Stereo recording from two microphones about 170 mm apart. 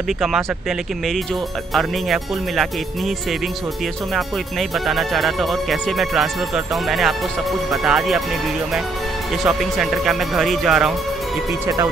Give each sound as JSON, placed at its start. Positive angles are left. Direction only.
{"t": 0.2, "sound": "speech", "side_deg": 0}
{"t": 4.1, "sound": "speech", "side_deg": 0}
{"t": 9.4, "sound": "speech", "side_deg": 0}
{"t": 11.6, "sound": "speech", "side_deg": -20}